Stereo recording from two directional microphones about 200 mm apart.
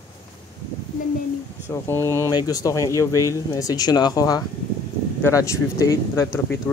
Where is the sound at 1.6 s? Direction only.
10° left (ahead or behind).